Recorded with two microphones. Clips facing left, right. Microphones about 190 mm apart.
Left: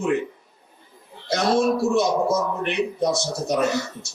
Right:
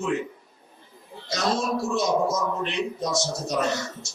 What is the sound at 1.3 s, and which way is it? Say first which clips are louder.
A man's voice: left 6 dB; 60° left (ahead or behind).